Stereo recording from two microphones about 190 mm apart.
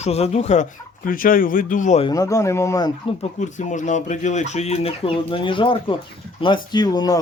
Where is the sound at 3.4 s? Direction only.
40° left (ahead or behind); by 7.2 s 20° left (ahead or behind).